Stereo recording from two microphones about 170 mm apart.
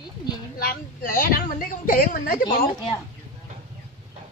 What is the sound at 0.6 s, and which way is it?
A woman's voice, 60° left (ahead or behind).